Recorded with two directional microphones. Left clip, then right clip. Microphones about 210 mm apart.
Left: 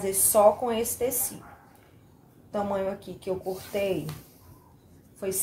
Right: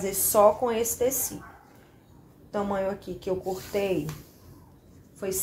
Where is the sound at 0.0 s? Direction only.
15° right (ahead or behind).